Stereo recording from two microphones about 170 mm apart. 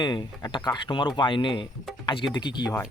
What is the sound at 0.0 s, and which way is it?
Speech, 25° left (ahead or behind).